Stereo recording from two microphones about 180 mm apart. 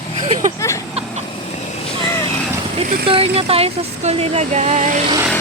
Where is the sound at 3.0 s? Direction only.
35° right (ahead or behind).